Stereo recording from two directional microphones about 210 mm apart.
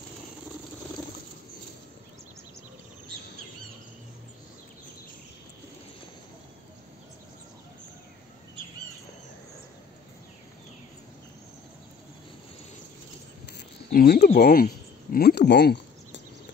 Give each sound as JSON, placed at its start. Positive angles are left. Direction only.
{"t": 13.9, "sound": "speech", "side_deg": 45}